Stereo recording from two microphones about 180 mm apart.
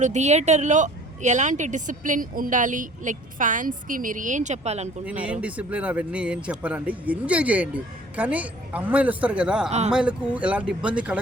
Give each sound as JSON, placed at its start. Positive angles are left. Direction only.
{"t": 0.0, "sound": "speech", "side_deg": -40}
{"t": 5.0, "sound": "speech", "side_deg": -5}